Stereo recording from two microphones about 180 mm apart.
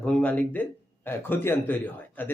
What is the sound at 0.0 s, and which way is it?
Speech, 5° left (ahead or behind).